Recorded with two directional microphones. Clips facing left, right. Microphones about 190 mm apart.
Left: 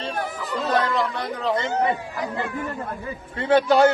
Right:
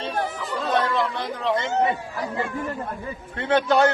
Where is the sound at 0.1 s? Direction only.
10° left (ahead or behind).